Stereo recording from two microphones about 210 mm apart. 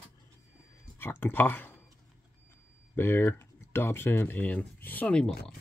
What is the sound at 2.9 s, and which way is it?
Speech, 10° left (ahead or behind).